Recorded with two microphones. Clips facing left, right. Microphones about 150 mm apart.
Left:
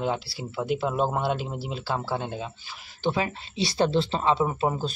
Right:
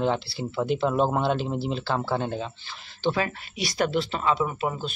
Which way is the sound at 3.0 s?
15° left (ahead or behind).